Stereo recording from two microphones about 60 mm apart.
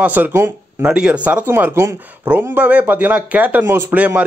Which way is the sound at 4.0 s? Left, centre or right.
Right.